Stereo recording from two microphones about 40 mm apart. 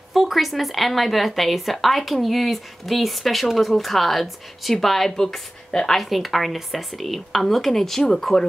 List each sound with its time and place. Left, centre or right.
0.1 s speech: centre
5.9 s speech: centre